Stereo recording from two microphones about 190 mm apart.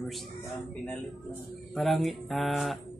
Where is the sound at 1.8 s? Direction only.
Centre (ahead or behind).